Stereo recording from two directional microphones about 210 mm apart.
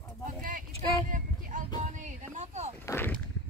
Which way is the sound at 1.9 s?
35° right (ahead or behind).